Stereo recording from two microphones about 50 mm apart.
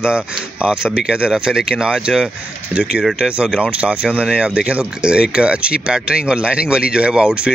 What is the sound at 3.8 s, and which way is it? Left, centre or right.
Speech, right.